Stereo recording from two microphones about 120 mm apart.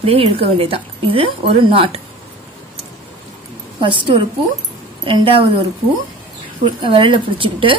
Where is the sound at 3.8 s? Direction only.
45° right (ahead or behind).